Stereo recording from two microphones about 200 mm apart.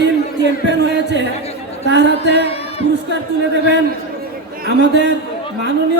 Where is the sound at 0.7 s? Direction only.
60° right (ahead or behind).